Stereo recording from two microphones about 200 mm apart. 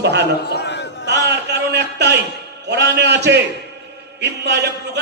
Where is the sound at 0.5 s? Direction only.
60° left (ahead or behind).